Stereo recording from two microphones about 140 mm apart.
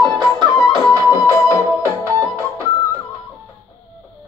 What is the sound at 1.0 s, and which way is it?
Music, 20° left (ahead or behind).